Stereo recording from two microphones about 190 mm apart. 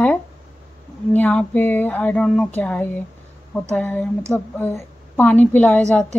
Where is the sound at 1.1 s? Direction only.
10° left (ahead or behind).